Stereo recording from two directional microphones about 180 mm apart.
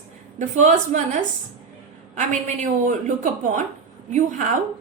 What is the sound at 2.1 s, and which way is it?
A woman's voice, 45° right (ahead or behind).